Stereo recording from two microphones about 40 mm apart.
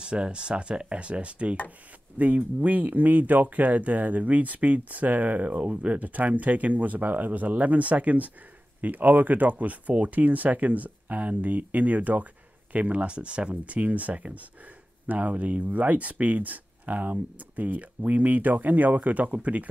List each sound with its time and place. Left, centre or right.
0.0 s speech: right
2.1 s speech: right